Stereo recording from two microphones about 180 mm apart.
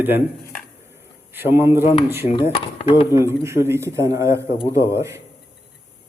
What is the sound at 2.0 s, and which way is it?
A man's voice, 10° right (ahead or behind).